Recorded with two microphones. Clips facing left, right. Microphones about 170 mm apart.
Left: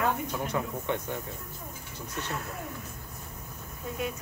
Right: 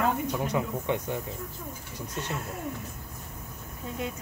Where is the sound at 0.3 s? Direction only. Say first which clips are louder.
Right 3 dB; 15° right (ahead or behind).